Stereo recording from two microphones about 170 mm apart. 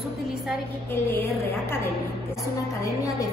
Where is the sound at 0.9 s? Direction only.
15° left (ahead or behind).